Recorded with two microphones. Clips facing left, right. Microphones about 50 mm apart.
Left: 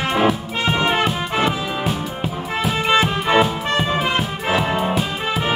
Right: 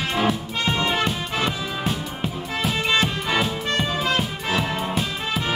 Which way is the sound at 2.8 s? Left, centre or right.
Left.